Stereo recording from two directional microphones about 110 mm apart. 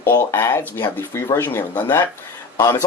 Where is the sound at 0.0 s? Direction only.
25° left (ahead or behind).